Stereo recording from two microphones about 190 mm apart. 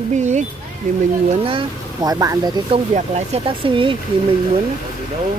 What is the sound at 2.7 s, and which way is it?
Speech, 35° right (ahead or behind).